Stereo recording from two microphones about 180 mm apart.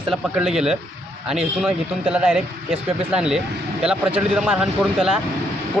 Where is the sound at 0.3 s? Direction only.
5° right (ahead or behind).